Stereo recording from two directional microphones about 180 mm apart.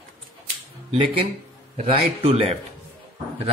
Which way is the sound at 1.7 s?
35° right (ahead or behind).